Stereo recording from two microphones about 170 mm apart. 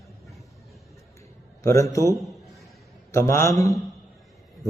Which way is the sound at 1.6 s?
20° left (ahead or behind).